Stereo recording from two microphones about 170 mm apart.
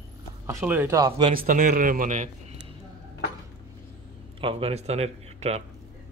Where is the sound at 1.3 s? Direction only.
50° right (ahead or behind).